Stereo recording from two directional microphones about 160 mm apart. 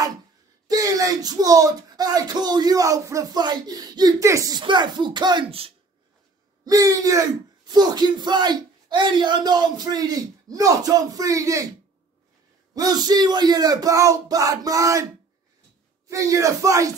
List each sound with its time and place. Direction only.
0.7 s speech: 20° right (ahead or behind)
6.6 s speech: 20° right (ahead or behind)
12.7 s speech: 25° right (ahead or behind)
16.1 s speech: 20° right (ahead or behind)